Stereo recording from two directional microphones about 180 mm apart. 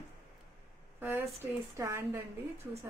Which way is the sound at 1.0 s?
10° right (ahead or behind).